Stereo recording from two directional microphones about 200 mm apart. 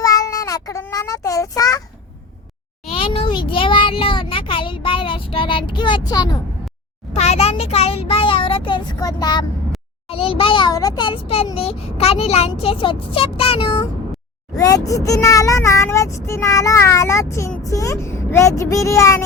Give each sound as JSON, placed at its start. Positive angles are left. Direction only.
{"t": 0.0, "sound": "child singing", "side_deg": 15}
{"t": 2.9, "sound": "a sound", "side_deg": 30}
{"t": 7.1, "sound": "a child's voice", "side_deg": 30}
{"t": 14.5, "sound": "speech", "side_deg": 15}